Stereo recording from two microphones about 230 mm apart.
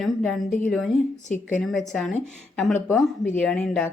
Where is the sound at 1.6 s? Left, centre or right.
Centre.